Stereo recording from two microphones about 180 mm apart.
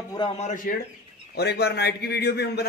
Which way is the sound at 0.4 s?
40° left (ahead or behind).